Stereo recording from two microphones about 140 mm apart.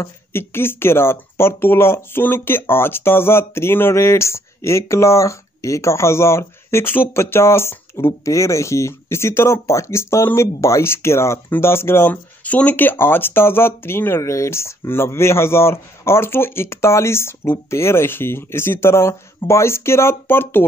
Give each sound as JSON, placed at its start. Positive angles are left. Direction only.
{"t": 0.0, "sound": "speech", "side_deg": 15}